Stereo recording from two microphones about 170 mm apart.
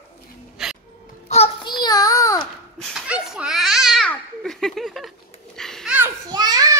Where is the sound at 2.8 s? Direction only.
5° right (ahead or behind).